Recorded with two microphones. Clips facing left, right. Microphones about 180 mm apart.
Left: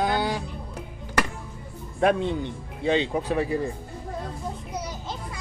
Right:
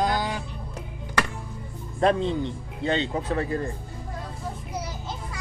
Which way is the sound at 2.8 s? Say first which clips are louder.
Left 2 dB; 15° left (ahead or behind).